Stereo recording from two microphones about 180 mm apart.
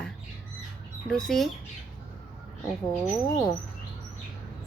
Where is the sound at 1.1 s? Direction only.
Centre (ahead or behind).